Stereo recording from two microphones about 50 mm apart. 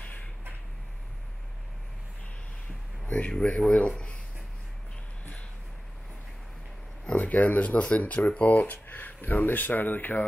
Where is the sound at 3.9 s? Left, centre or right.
Centre.